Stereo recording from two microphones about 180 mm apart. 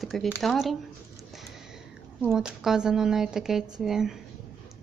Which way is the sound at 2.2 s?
5° right (ahead or behind).